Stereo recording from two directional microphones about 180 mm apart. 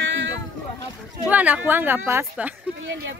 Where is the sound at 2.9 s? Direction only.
90° right.